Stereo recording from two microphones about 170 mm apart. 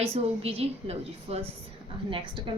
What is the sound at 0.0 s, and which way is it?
A woman's voice, 35° right (ahead or behind).